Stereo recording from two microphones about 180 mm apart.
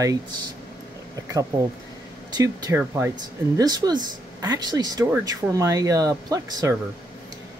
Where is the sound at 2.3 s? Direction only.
20° right (ahead or behind).